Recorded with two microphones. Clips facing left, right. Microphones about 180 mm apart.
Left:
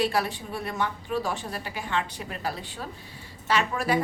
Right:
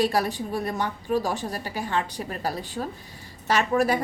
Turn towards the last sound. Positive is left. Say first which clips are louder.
# right 3 dB
turn(degrees=-45)  # may be behind; listen again after turning